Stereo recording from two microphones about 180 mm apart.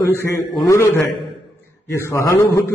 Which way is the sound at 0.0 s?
15° left (ahead or behind).